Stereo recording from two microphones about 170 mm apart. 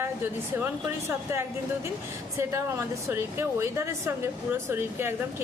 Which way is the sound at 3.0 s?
15° right (ahead or behind).